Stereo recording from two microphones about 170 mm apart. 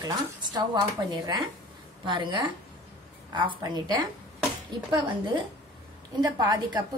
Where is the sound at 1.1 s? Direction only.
25° right (ahead or behind).